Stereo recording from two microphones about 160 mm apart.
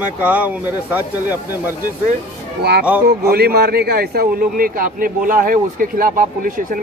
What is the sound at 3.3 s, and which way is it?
A man's voice, 80° right.